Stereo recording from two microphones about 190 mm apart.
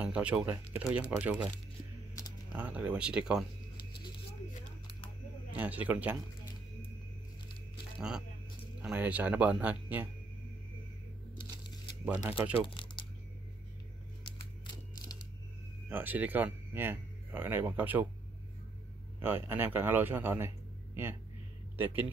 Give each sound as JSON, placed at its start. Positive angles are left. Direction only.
{"t": 0.0, "sound": "speech", "side_deg": -5}
{"t": 2.5, "sound": "speech", "side_deg": -10}
{"t": 5.5, "sound": "speech", "side_deg": -10}
{"t": 8.8, "sound": "speech", "side_deg": -10}
{"t": 12.0, "sound": "speech", "side_deg": -10}
{"t": 12.6, "sound": "crumpling", "side_deg": 25}
{"t": 15.9, "sound": "speech", "side_deg": -10}
{"t": 19.2, "sound": "a man's voice", "side_deg": -10}